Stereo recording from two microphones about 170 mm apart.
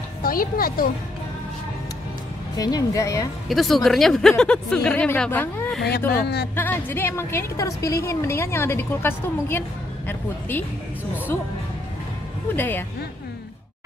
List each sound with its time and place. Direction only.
0.2 s speech: 60° left (ahead or behind)
2.5 s speech: 20° left (ahead or behind)
3.4 s speech: centre (ahead or behind)
5.9 s speech: 70° left (ahead or behind)
6.5 s a woman's voice: 10° left (ahead or behind)
12.5 s a woman's voice: 10° left (ahead or behind)